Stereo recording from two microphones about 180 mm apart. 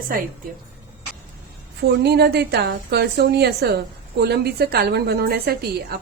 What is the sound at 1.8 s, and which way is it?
A woman's voice, 65° right (ahead or behind).